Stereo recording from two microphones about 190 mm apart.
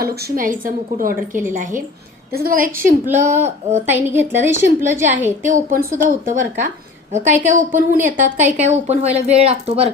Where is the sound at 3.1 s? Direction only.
35° right (ahead or behind).